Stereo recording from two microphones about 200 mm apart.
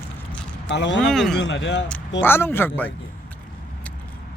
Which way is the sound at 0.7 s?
60° left (ahead or behind).